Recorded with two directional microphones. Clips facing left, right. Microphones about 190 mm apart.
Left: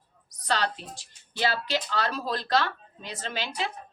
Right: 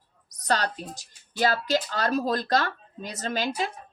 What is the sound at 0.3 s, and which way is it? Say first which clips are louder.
A woman's voice: right 2 dB; 45° right (ahead or behind).